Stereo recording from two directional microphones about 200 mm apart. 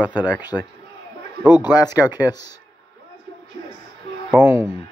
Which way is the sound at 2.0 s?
10° right (ahead or behind).